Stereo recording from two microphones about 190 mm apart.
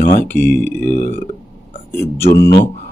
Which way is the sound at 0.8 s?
50° left (ahead or behind).